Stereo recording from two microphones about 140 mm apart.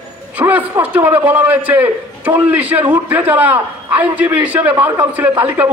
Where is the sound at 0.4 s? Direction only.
10° right (ahead or behind).